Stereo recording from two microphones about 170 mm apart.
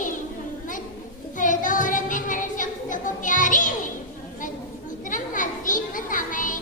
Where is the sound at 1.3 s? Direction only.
50° left (ahead or behind).